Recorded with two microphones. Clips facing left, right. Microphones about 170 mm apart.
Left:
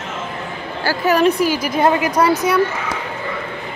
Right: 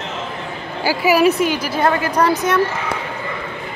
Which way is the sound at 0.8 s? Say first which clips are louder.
Right 1 dB; 10° right (ahead or behind).